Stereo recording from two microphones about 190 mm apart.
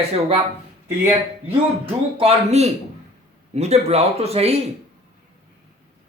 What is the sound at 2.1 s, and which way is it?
Speech, 30° right (ahead or behind).